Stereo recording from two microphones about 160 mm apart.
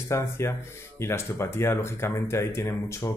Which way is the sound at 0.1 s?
15° left (ahead or behind).